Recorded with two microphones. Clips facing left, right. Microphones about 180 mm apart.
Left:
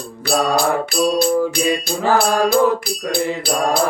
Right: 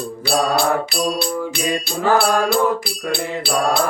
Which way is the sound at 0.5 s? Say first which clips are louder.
Left 1 dB; 45° left (ahead or behind).